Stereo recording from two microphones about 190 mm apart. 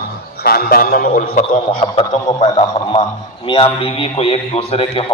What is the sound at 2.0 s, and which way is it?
A man's voice, 35° left (ahead or behind).